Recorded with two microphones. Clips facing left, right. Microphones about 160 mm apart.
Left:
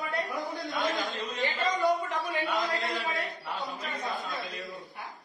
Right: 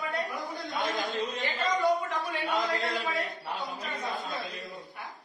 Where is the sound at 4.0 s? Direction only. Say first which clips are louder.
Even; centre (ahead or behind).